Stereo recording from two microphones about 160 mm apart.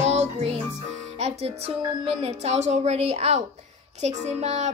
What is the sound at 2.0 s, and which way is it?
Music, 40° right (ahead or behind).